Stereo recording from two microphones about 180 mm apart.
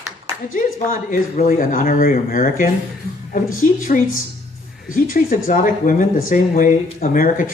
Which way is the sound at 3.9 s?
45° left (ahead or behind).